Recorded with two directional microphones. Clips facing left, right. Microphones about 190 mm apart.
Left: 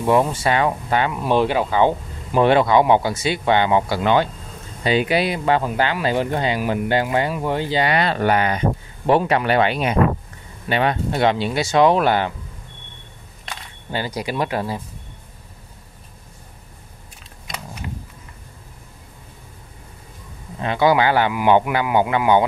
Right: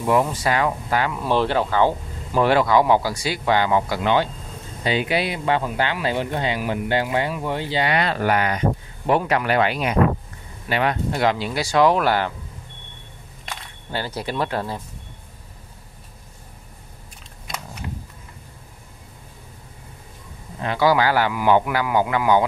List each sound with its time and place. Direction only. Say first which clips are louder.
0.1 s speech: left 2 dB; 25° left (ahead or behind)
4.0 s speech: left 2 dB; 45° left (ahead or behind)
8.0 s speech: left 2 dB; 30° left (ahead or behind)
13.9 s speech: left 2 dB; 15° left (ahead or behind)
20.6 s speech: left 2 dB; 20° left (ahead or behind)